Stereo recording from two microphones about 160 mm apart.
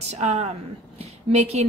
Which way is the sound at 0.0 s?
45° right (ahead or behind).